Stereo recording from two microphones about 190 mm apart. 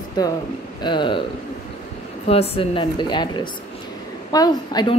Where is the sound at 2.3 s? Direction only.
30° left (ahead or behind).